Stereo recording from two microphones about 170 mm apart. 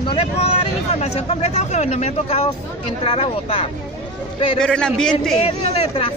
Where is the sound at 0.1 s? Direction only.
35° left (ahead or behind).